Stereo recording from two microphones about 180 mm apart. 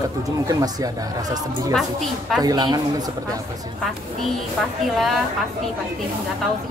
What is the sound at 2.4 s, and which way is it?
Speech, 20° right (ahead or behind).